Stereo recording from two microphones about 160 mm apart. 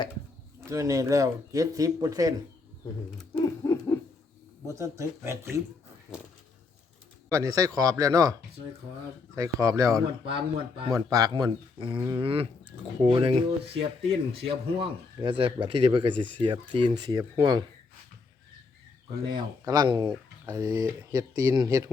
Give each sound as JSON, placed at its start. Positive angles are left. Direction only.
{"t": 0.7, "sound": "speech", "side_deg": -20}
{"t": 3.3, "sound": "a sound", "side_deg": 20}
{"t": 4.7, "sound": "speech", "side_deg": -20}
{"t": 7.3, "sound": "speech", "side_deg": -20}
{"t": 10.2, "sound": "speech", "side_deg": -35}
{"t": 10.9, "sound": "speech", "side_deg": -20}
{"t": 19.3, "sound": "speech", "side_deg": -25}